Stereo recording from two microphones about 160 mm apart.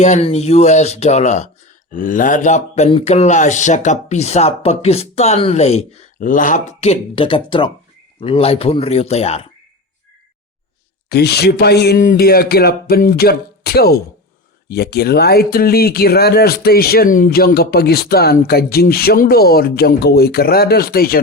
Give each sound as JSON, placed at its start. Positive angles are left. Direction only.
{"t": 0.0, "sound": "speech", "side_deg": 45}
{"t": 6.1, "sound": "speech", "side_deg": 55}
{"t": 11.1, "sound": "speech", "side_deg": 90}
{"t": 12.0, "sound": "speech", "side_deg": 70}